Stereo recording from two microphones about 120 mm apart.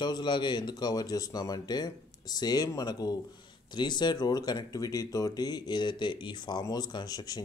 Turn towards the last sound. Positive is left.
turn(degrees=35)  # may be behind; listen again after turning